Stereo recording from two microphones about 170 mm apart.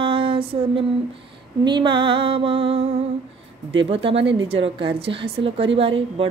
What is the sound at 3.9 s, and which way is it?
Music, 35° right (ahead or behind).